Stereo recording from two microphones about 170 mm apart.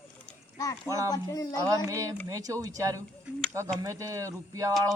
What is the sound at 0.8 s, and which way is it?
Speech, 20° right (ahead or behind).